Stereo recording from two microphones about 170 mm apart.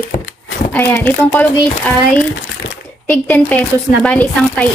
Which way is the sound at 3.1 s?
10° left (ahead or behind).